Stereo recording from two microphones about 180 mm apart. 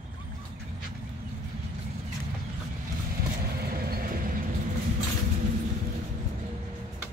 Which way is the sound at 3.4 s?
55° right (ahead or behind).